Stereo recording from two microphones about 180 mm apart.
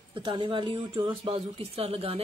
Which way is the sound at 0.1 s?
30° right (ahead or behind).